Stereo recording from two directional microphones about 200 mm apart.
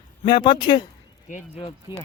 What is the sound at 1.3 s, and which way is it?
Speech, 40° left (ahead or behind).